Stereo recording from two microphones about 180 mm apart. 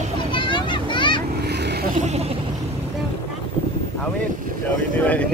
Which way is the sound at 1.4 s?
65° right (ahead or behind).